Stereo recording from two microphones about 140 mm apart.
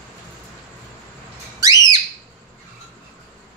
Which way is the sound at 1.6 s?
25° right (ahead or behind).